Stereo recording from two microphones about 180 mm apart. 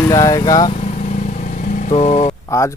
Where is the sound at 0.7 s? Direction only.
40° left (ahead or behind).